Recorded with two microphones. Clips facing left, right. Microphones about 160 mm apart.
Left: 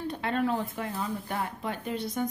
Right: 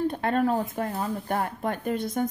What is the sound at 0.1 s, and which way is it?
A woman's voice, 45° right (ahead or behind).